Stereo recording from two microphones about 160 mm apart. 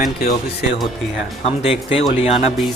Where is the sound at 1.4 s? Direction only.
35° left (ahead or behind).